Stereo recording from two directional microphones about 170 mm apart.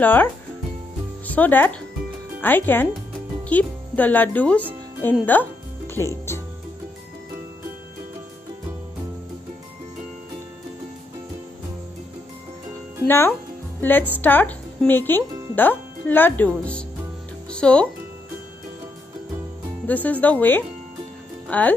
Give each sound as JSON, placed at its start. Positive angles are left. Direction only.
{"t": 0.0, "sound": "speech", "side_deg": 10}
{"t": 5.2, "sound": "music", "side_deg": 10}
{"t": 13.0, "sound": "speech", "side_deg": 15}
{"t": 19.9, "sound": "speech", "side_deg": 10}